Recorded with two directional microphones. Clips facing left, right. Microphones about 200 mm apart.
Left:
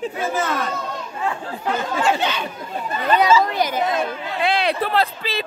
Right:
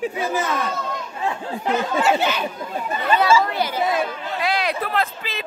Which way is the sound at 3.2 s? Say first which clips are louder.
Left 2 dB; 15° left (ahead or behind).